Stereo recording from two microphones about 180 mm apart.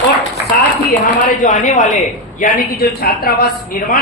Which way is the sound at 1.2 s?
45° left (ahead or behind).